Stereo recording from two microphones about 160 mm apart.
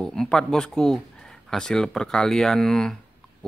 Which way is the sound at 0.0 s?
5° left (ahead or behind).